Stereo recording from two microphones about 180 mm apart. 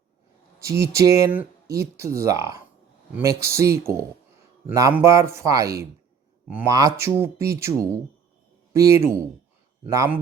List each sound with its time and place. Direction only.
0.6 s speech: 15° right (ahead or behind)
9.0 s speech: 15° right (ahead or behind)